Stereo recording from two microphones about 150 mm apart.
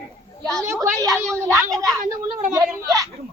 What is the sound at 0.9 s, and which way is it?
A woman's voice, 20° right (ahead or behind).